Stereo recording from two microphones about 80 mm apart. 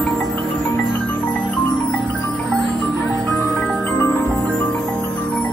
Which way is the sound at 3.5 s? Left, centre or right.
Left.